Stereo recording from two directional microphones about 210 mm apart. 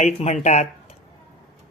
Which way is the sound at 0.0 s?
30° left (ahead or behind).